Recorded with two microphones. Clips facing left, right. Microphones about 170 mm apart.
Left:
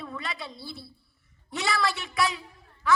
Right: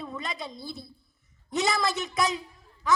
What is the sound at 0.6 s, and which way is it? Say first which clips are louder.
Speech: right 2 dB; 45° right (ahead or behind).